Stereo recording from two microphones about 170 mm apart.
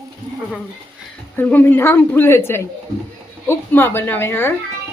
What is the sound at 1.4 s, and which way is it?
Speech, 10° left (ahead or behind).